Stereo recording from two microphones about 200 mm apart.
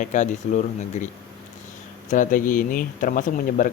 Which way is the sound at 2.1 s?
40° left (ahead or behind).